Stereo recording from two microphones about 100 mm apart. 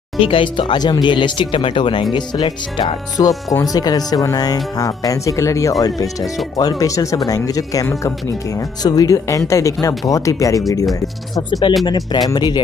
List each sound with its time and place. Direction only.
0.2 s speech: 60° left (ahead or behind); by 10.6 s 35° left (ahead or behind)
11.8 s speech: 45° left (ahead or behind)